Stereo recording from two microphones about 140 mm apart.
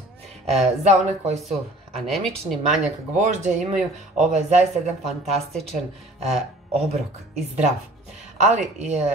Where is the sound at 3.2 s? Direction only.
55° right (ahead or behind).